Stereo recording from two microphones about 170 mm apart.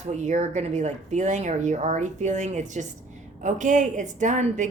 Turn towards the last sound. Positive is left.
turn(degrees=-45)  # may be behind; listen again after turning